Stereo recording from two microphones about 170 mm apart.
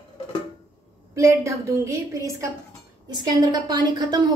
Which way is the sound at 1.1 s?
15° right (ahead or behind).